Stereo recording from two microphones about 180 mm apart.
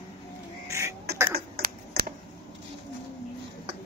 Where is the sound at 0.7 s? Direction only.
15° right (ahead or behind).